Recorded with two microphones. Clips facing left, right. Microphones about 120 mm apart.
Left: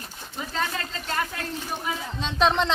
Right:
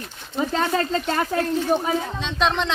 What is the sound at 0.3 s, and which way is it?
Speech, 40° right (ahead or behind).